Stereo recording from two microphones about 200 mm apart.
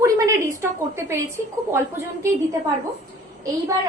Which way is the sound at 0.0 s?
15° right (ahead or behind).